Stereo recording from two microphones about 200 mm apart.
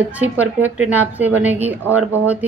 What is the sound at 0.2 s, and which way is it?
A woman's voice, 10° right (ahead or behind).